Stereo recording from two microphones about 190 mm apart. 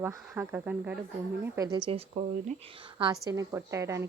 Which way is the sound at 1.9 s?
35° right (ahead or behind).